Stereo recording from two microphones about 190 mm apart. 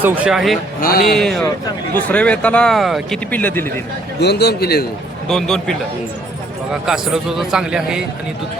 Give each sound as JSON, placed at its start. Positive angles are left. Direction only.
{"t": 0.0, "sound": "a man's voice", "side_deg": -5}
{"t": 0.8, "sound": "speech", "side_deg": 50}
{"t": 1.1, "sound": "a man's voice", "side_deg": 0}
{"t": 4.2, "sound": "a man's voice", "side_deg": 60}
{"t": 5.3, "sound": "a man's voice", "side_deg": 0}
{"t": 6.8, "sound": "a man's voice", "side_deg": -5}